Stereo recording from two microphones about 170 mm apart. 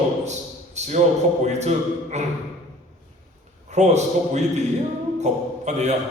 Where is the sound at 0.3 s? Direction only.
40° right (ahead or behind).